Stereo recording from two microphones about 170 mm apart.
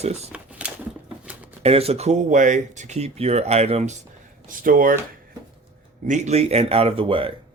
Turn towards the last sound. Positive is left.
turn(degrees=-30)  # may be behind; listen again after turning